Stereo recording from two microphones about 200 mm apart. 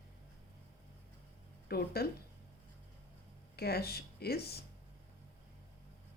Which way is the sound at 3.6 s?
50° left (ahead or behind).